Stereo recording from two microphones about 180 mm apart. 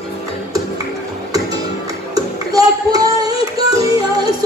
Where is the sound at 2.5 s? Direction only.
20° right (ahead or behind).